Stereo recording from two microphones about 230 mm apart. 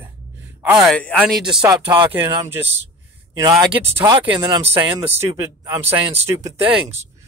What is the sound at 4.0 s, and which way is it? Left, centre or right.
Speech, centre.